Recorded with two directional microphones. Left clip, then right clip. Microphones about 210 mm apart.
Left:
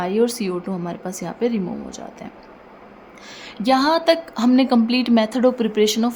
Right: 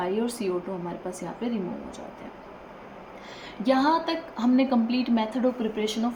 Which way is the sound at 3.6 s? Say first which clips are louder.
Left 6 dB; 55° left (ahead or behind).